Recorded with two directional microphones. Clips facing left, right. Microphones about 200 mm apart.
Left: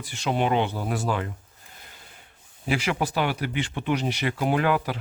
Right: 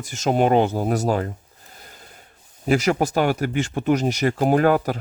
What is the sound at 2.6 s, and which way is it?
Speech, 45° right (ahead or behind).